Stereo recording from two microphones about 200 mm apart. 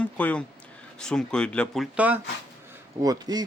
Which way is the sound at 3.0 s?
20° right (ahead or behind).